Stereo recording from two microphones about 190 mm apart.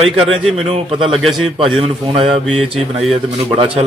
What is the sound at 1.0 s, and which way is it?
A man's voice, centre (ahead or behind).